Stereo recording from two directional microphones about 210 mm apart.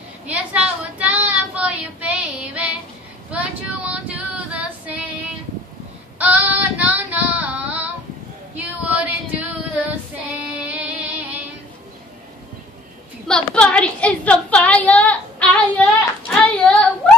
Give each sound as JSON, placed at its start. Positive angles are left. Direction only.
{"t": 0.3, "sound": "child singing", "side_deg": -5}
{"t": 3.3, "sound": "female singing", "side_deg": -5}
{"t": 6.1, "sound": "female singing", "side_deg": -5}
{"t": 10.4, "sound": "music", "side_deg": -5}
{"t": 13.3, "sound": "a sound", "side_deg": 5}